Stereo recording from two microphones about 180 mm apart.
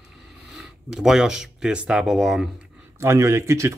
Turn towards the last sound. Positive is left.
turn(degrees=-15)  # may be behind; listen again after turning